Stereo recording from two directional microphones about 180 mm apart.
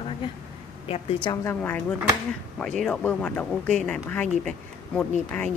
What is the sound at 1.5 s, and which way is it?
A woman's voice, 10° left (ahead or behind).